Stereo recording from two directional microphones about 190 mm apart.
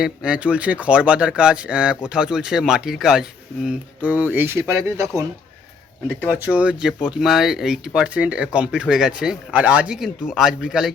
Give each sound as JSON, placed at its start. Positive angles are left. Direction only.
{"t": 0.0, "sound": "speech", "side_deg": -5}
{"t": 6.2, "sound": "speech", "side_deg": -5}